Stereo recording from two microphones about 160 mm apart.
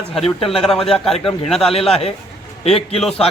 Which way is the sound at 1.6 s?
40° left (ahead or behind).